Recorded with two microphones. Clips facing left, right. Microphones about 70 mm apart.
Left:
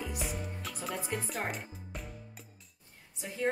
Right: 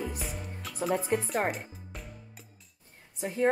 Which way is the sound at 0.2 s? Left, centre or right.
Centre.